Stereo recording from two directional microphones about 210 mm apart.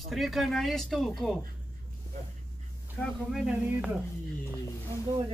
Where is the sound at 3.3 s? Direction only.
5° right (ahead or behind).